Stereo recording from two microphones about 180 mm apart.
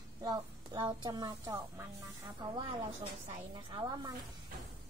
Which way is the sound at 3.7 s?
25° right (ahead or behind).